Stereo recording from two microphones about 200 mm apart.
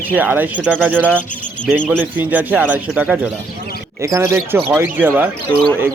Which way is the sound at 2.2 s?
10° right (ahead or behind).